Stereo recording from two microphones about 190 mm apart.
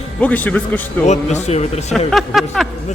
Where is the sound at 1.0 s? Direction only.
40° left (ahead or behind).